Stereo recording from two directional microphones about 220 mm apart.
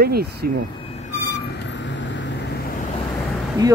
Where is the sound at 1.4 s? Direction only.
55° left (ahead or behind).